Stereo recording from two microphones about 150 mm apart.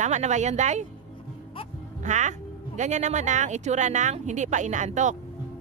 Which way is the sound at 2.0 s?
55° right (ahead or behind).